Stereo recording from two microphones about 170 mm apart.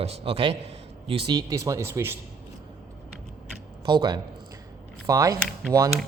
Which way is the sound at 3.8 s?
25° right (ahead or behind).